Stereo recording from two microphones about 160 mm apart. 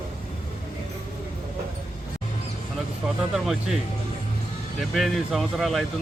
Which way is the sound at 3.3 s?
Centre (ahead or behind).